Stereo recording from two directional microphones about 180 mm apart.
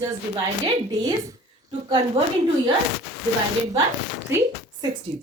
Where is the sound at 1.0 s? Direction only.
20° right (ahead or behind).